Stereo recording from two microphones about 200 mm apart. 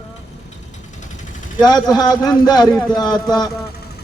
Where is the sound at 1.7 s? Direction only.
20° left (ahead or behind).